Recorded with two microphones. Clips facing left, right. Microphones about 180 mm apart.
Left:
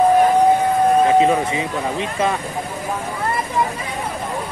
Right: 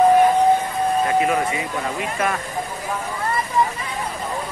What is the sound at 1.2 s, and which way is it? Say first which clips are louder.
Speech: left 4 dB; 25° left (ahead or behind).